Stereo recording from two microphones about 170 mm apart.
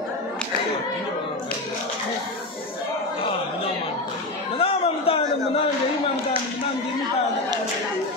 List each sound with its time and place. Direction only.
4.6 s chatter: 35° left (ahead or behind)